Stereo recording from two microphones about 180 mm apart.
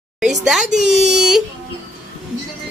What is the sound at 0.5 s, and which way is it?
Speech, centre (ahead or behind).